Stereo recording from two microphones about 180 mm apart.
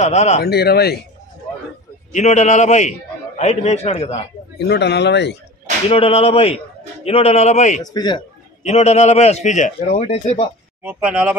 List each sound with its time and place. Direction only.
0.0 s a man's voice: 40° left (ahead or behind)
0.4 s speech: 60° left (ahead or behind)
2.1 s a man's voice: 40° left (ahead or behind)
4.6 s speech: 70° left (ahead or behind)
5.9 s a man's voice: 35° left (ahead or behind)
7.8 s speech: 25° left (ahead or behind)
8.6 s a man's voice: 40° left (ahead or behind)
10.8 s speech: 5° right (ahead or behind)